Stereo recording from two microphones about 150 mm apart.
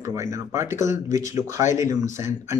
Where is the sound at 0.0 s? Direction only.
20° right (ahead or behind).